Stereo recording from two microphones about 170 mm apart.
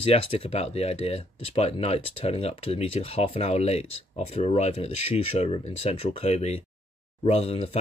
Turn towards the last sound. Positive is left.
turn(degrees=35)  # may be behind; listen again after turning